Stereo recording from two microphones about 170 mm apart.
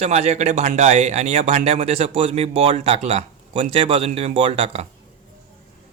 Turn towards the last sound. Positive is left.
turn(degrees=-35)  # may be behind; listen again after turning